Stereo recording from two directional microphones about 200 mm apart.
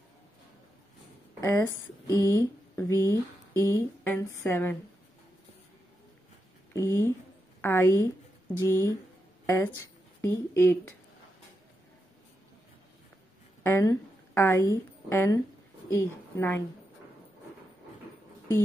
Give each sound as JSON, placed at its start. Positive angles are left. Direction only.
{"t": 1.4, "sound": "speech", "side_deg": 15}
{"t": 6.7, "sound": "speech", "side_deg": 15}
{"t": 13.6, "sound": "a woman's voice", "side_deg": 10}